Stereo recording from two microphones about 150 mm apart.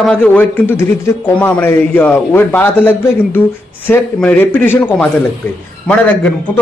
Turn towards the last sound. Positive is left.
turn(degrees=10)  # may be behind; listen again after turning